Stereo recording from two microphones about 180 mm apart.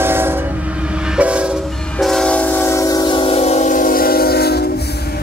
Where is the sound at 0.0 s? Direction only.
10° right (ahead or behind); by 4.6 s 60° left (ahead or behind).